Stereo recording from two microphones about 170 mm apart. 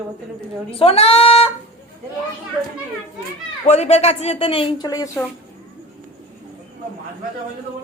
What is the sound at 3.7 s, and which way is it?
Speech, 40° left (ahead or behind).